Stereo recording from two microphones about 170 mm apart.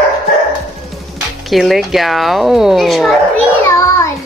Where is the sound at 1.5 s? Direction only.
Centre (ahead or behind).